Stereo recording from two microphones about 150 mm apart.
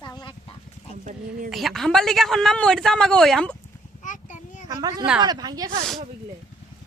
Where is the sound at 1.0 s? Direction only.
60° right (ahead or behind).